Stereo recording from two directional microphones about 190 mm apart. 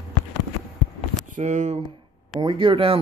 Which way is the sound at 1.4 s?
40° right (ahead or behind).